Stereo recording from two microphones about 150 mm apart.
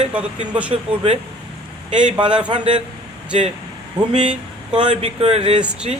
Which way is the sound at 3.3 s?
45° right (ahead or behind).